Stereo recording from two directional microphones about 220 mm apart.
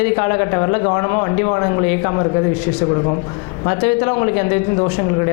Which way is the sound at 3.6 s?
20° left (ahead or behind).